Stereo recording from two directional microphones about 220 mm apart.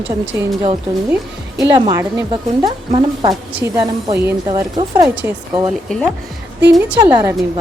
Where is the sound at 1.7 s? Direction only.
15° right (ahead or behind).